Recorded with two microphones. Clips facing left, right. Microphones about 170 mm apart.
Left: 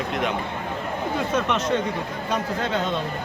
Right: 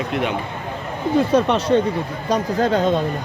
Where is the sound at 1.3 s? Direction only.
35° right (ahead or behind).